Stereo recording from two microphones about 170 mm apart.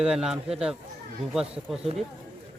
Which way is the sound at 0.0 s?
5° right (ahead or behind).